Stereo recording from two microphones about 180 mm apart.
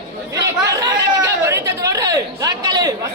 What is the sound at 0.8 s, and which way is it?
Chatter, 15° right (ahead or behind).